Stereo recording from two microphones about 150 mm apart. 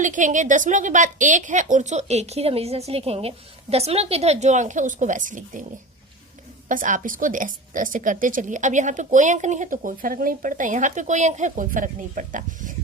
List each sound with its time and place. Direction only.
0.0 s a woman's voice: 55° right (ahead or behind)
6.7 s a woman's voice: 60° right (ahead or behind)